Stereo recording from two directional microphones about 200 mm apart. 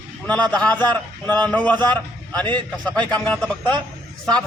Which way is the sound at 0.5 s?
5° left (ahead or behind).